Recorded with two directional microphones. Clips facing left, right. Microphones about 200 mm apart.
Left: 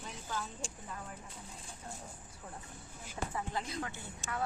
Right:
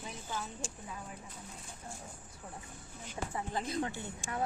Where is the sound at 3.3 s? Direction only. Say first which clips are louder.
Right 2 dB; 25° right (ahead or behind).